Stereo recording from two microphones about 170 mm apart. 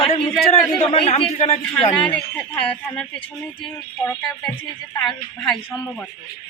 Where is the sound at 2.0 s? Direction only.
5° left (ahead or behind).